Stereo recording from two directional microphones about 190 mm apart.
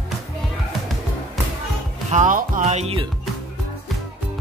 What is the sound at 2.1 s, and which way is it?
Music, 45° right (ahead or behind).